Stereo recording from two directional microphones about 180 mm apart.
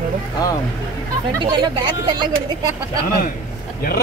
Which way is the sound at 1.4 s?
25° right (ahead or behind).